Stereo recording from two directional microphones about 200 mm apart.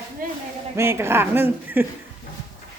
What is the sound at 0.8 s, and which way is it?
Speech, 10° right (ahead or behind).